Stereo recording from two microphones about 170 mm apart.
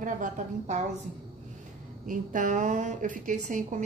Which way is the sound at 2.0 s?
50° right (ahead or behind).